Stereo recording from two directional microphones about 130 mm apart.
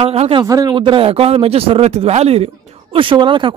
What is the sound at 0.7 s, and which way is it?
Speech, 40° right (ahead or behind).